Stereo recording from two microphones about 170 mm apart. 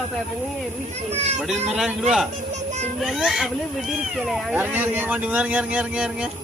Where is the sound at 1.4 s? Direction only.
5° right (ahead or behind).